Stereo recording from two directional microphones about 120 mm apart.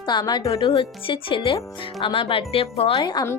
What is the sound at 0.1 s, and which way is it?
Speech, 40° left (ahead or behind).